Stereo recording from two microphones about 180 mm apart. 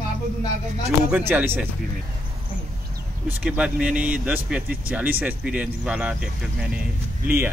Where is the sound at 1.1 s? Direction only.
10° right (ahead or behind).